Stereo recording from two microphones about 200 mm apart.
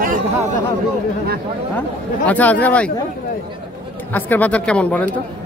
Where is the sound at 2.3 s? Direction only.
10° left (ahead or behind).